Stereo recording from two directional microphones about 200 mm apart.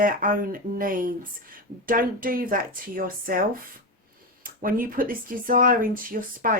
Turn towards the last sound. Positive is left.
turn(degrees=-45)  # may be behind; listen again after turning